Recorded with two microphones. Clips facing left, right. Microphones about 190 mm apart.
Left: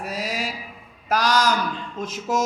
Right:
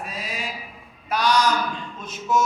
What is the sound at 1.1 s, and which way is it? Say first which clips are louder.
A man's voice: even; 90° left.